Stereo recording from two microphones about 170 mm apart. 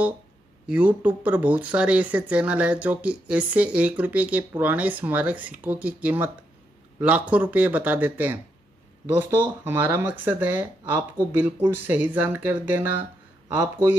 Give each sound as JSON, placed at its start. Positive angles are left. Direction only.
{"t": 0.7, "sound": "speech", "side_deg": -5}